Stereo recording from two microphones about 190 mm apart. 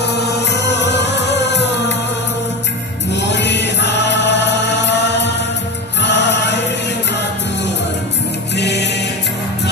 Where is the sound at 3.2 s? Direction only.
65° left (ahead or behind).